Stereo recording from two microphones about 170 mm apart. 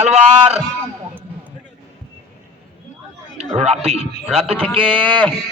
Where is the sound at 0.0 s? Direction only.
40° right (ahead or behind).